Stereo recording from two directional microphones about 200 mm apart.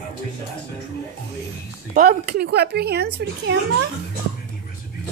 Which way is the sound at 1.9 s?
45° right (ahead or behind).